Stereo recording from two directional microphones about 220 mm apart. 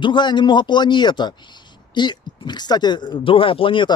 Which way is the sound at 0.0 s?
20° left (ahead or behind).